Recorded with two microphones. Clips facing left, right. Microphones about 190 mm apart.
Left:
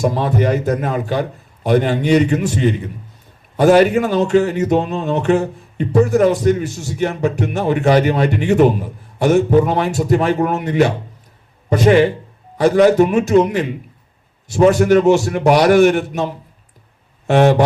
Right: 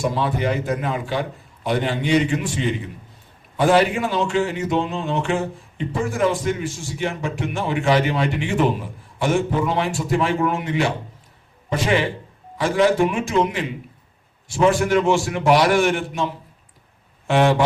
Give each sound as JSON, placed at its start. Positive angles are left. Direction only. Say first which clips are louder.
{"t": 0.0, "sound": "a man's voice", "louder": "left 5 dB", "side_deg": 40}